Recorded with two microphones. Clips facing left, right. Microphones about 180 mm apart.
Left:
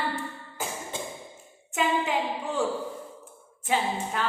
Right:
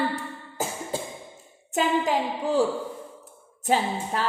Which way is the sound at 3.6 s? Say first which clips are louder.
Right 3 dB; 40° right (ahead or behind).